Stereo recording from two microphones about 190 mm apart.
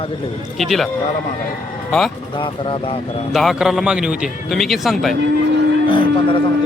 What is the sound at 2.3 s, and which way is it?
Speech, 25° left (ahead or behind).